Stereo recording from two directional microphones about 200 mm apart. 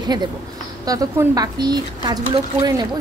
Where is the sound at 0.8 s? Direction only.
15° right (ahead or behind).